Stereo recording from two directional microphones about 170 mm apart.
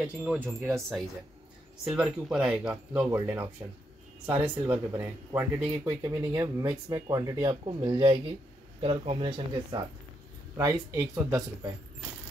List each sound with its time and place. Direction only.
0.0 s speech: 5° right (ahead or behind)
0.7 s speech: centre (ahead or behind); by 9.8 s 30° right (ahead or behind)
10.6 s speech: 15° right (ahead or behind)